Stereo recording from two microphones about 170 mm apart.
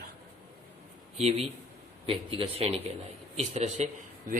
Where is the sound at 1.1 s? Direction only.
40° right (ahead or behind).